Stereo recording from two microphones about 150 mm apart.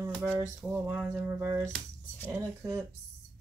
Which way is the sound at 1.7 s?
10° left (ahead or behind).